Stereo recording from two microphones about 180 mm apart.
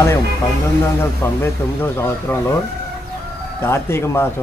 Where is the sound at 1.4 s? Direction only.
15° left (ahead or behind).